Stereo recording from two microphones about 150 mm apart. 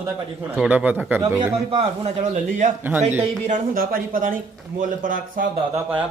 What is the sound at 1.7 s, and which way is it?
A man's voice, 40° right (ahead or behind).